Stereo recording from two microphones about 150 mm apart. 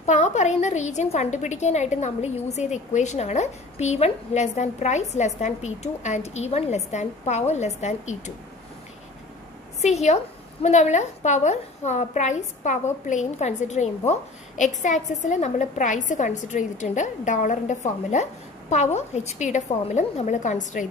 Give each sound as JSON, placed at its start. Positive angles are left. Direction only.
{"t": 0.0, "sound": "a woman's voice", "side_deg": 55}
{"t": 9.8, "sound": "a woman's voice", "side_deg": 50}